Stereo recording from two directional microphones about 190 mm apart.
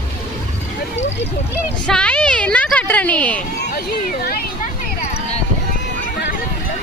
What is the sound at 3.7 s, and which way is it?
Speech, 50° left (ahead or behind).